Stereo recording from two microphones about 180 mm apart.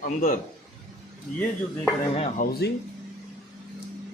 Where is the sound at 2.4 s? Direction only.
65° left (ahead or behind).